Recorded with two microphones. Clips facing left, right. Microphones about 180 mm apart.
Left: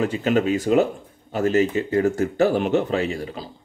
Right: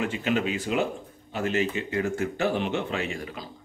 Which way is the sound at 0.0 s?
40° left (ahead or behind).